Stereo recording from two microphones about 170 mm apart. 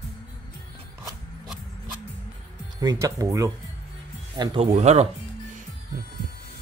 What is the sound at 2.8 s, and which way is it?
Speech, 20° right (ahead or behind).